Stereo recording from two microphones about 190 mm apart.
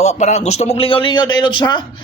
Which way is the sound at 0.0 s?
35° left (ahead or behind).